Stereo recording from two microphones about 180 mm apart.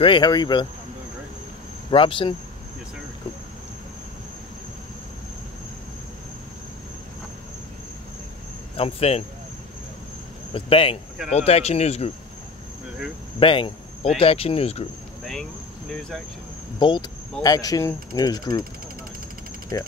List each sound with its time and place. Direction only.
0.0 s speech: 25° left (ahead or behind)
1.9 s speech: 30° left (ahead or behind)
8.7 s speech: 35° left (ahead or behind)
10.5 s speech: 30° left (ahead or behind)
13.4 s speech: 30° left (ahead or behind)
15.9 s speech: 5° left (ahead or behind)
16.8 s speech: 25° left (ahead or behind)
19.7 s speech: 20° left (ahead or behind)